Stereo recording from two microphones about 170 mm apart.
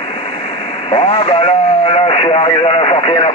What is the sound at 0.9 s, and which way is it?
Speech, 30° left (ahead or behind).